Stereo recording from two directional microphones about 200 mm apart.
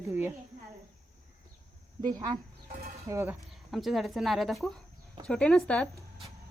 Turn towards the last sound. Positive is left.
turn(degrees=5)  # may be behind; listen again after turning